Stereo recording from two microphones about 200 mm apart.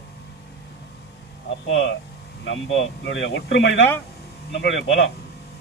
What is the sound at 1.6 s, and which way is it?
Speech, 70° left (ahead or behind).